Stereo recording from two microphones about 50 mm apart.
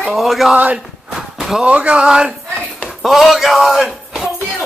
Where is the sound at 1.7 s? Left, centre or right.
Right.